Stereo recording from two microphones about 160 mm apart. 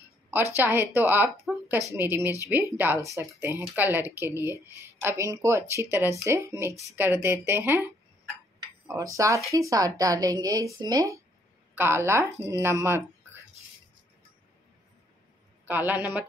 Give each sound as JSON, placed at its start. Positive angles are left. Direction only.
{"t": 0.6, "sound": "speech", "side_deg": -15}
{"t": 1.3, "sound": "speech", "side_deg": 0}
{"t": 2.0, "sound": "speech", "side_deg": -15}
{"t": 8.8, "sound": "speech", "side_deg": -20}
{"t": 15.6, "sound": "speech", "side_deg": -10}